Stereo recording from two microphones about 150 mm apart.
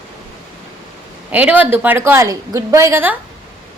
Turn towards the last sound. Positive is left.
turn(degrees=-15)  # may be behind; listen again after turning